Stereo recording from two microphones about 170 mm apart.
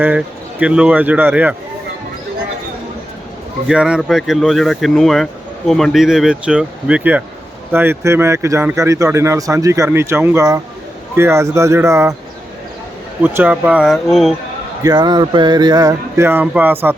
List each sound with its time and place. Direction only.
0.0 s speech: 10° right (ahead or behind)
3.7 s speech: 5° right (ahead or behind)
13.2 s speech: 10° right (ahead or behind)
14.8 s speech: 25° right (ahead or behind)